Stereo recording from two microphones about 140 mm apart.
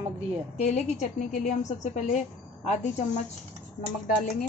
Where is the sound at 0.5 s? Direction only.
55° left (ahead or behind).